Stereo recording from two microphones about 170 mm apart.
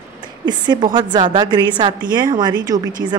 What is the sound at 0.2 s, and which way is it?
A woman's voice, 25° right (ahead or behind).